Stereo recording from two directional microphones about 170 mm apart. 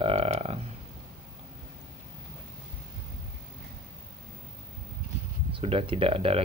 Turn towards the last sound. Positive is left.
turn(degrees=-35)  # may be behind; listen again after turning